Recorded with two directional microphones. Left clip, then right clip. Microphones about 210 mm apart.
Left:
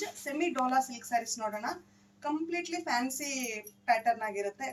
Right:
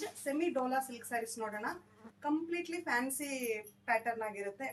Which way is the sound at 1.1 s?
15° right (ahead or behind).